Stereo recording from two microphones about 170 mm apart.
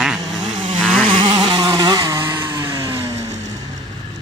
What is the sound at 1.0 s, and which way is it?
Vehicle, 30° right (ahead or behind).